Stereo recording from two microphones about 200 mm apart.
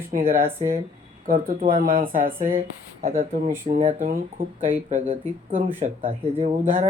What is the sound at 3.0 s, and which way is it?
Speech, 40° right (ahead or behind).